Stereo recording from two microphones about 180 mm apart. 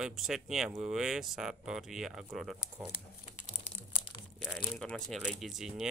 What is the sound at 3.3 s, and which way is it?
Crumpling, 35° left (ahead or behind).